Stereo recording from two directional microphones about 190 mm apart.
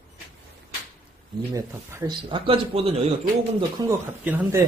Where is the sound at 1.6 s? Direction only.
20° right (ahead or behind).